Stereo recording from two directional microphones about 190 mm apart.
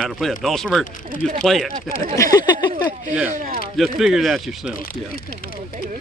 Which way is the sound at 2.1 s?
20° left (ahead or behind).